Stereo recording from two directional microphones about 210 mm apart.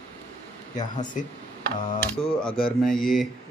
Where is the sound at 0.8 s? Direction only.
35° left (ahead or behind).